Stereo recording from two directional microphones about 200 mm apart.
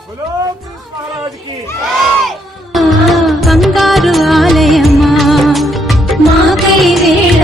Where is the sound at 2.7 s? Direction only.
Centre (ahead or behind).